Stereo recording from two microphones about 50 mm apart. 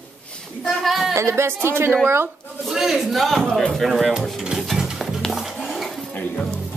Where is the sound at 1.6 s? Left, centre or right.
Right.